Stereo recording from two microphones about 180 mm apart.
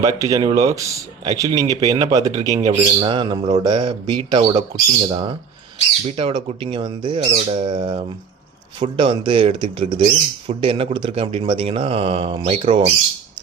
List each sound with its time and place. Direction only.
0.0 s speech: 20° right (ahead or behind)